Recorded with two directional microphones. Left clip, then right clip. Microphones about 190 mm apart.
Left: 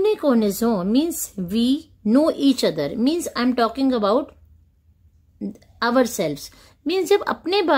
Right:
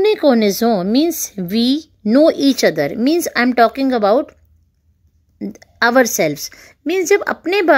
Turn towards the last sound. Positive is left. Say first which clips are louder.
# right 6 dB
turn(degrees=-15)  # may be behind; listen again after turning